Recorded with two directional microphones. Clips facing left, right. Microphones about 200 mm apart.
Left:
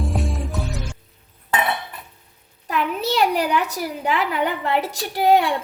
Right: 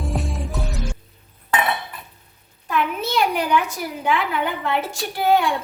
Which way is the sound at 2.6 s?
35° left (ahead or behind).